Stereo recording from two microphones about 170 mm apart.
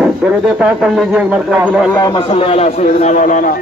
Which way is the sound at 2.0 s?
30° left (ahead or behind).